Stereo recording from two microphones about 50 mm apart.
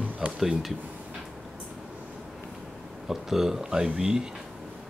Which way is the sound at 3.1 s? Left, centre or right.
Centre.